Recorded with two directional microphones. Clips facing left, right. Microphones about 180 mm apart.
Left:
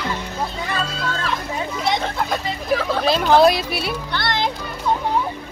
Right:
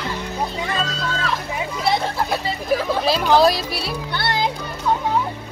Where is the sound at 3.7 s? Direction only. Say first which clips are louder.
Left 2 dB; 55° left (ahead or behind).